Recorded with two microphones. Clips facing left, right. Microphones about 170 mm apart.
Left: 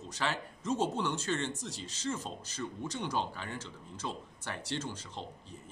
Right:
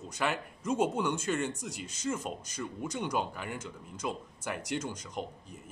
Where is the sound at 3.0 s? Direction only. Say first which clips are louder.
Right 2 dB; 10° right (ahead or behind).